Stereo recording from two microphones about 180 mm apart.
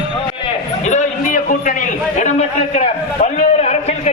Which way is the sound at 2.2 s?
40° left (ahead or behind).